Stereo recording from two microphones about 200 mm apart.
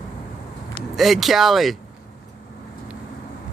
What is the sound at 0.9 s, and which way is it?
Speech, centre (ahead or behind).